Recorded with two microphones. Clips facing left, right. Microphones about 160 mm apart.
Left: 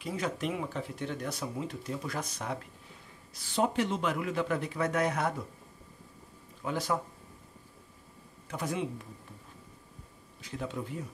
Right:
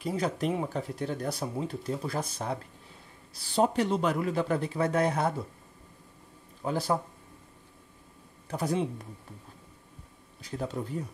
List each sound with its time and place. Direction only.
0.0 s speech: 35° right (ahead or behind)
6.6 s speech: 35° right (ahead or behind)
8.5 s speech: 35° right (ahead or behind)
10.4 s speech: 35° right (ahead or behind)